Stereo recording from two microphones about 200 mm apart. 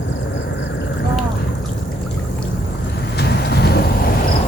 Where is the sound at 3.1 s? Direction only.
55° left (ahead or behind).